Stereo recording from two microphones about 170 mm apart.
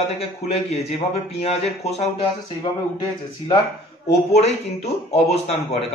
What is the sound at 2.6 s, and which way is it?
Speech, 25° left (ahead or behind).